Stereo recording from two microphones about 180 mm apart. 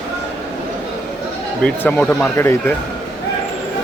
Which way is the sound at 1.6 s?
10° left (ahead or behind).